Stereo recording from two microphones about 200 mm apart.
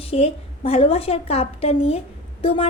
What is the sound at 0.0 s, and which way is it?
A woman's voice, 30° left (ahead or behind).